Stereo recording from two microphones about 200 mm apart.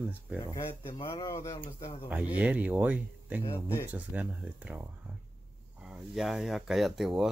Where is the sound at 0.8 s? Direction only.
15° left (ahead or behind).